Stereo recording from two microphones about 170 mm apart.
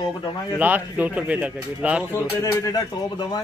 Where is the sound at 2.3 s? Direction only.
20° left (ahead or behind).